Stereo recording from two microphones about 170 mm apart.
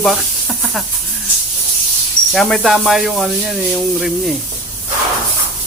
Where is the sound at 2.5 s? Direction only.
Centre (ahead or behind).